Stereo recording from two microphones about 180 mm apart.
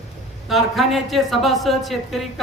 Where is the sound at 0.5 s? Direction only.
Centre (ahead or behind).